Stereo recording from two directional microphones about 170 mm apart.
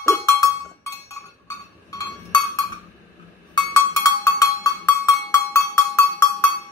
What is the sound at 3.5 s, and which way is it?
Cowbell, 20° left (ahead or behind).